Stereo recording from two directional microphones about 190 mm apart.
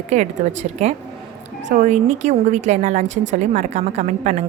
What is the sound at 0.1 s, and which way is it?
Speech, 35° right (ahead or behind).